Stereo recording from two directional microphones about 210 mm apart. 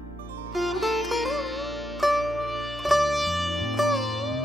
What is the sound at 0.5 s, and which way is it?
Music, centre (ahead or behind).